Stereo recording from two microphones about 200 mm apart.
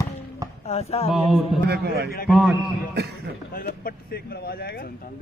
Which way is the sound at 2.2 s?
Centre (ahead or behind).